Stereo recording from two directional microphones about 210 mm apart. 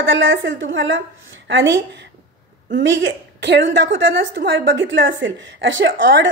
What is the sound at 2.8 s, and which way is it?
A woman's voice, 55° right (ahead or behind).